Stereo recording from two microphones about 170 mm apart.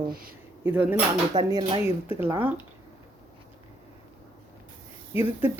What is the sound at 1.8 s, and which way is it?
Speech, 15° right (ahead or behind).